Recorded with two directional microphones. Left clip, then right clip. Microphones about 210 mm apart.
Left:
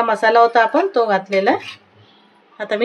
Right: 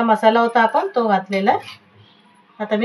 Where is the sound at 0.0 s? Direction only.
50° left (ahead or behind).